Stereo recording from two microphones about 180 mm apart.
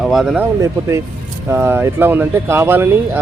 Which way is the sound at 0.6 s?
15° right (ahead or behind).